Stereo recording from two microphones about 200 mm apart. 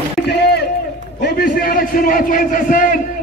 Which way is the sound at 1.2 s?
45° left (ahead or behind).